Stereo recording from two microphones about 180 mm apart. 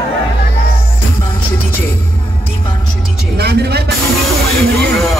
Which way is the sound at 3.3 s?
65° right (ahead or behind).